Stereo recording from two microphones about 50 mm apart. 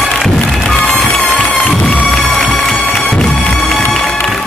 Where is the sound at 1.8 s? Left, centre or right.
Centre.